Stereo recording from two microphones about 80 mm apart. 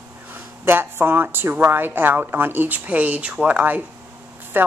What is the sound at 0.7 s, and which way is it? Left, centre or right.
Speech, right.